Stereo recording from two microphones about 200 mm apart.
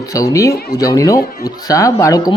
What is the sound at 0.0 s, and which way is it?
Speech, 15° left (ahead or behind).